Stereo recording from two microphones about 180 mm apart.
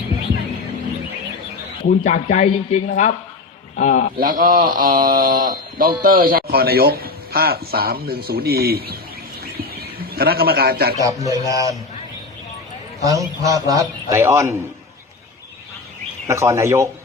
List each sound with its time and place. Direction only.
1.8 s a man's voice: 45° left (ahead or behind)
4.2 s speech: 50° right (ahead or behind)
9.4 s bird: 60° right (ahead or behind)
11.0 s speech: 20° right (ahead or behind)
13.1 s a man's voice: 20° right (ahead or behind)
16.2 s a man's voice: 15° right (ahead or behind)